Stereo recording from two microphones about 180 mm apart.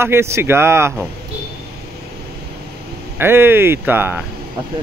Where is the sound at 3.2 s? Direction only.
10° right (ahead or behind).